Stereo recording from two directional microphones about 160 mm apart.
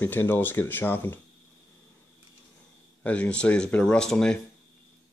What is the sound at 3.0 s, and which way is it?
Speech, 10° left (ahead or behind).